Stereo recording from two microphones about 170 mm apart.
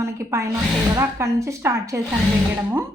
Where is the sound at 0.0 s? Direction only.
15° right (ahead or behind).